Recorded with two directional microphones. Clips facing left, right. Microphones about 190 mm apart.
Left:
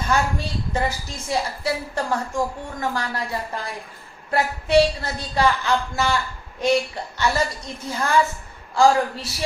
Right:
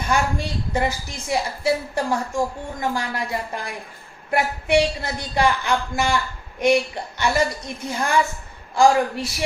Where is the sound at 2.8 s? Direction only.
15° right (ahead or behind).